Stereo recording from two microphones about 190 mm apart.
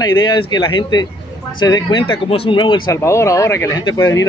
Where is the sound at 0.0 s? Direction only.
20° left (ahead or behind).